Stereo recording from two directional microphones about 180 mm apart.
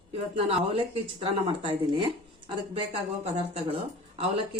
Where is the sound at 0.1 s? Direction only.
35° right (ahead or behind).